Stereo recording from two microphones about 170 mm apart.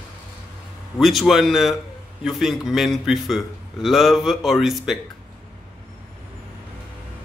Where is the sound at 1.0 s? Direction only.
Centre (ahead or behind).